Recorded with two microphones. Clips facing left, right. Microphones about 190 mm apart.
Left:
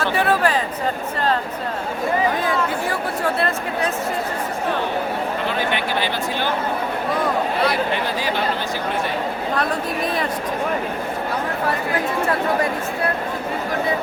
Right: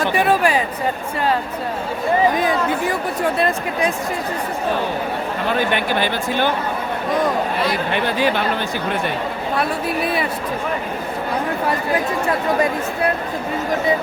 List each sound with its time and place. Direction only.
0.0 s a sound: 15° right (ahead or behind)
2.4 s speech: 15° right (ahead or behind)
5.5 s speech: 50° right (ahead or behind)
9.6 s speech: 5° right (ahead or behind)